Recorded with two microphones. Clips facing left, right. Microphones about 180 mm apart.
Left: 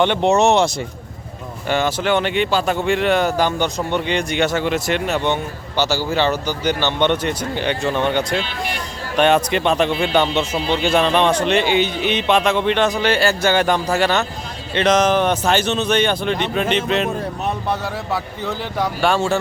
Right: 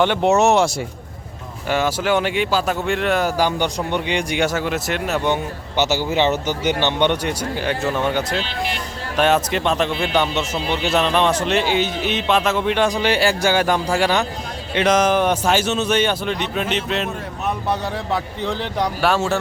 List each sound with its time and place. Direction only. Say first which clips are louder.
0.0 s a man's voice: left 1 dB; 5° right (ahead or behind)
5.7 s a man's voice: even; 20° right (ahead or behind); by 17.1 s centre (ahead or behind)
19.0 s a man's voice: left 2 dB; 5° right (ahead or behind)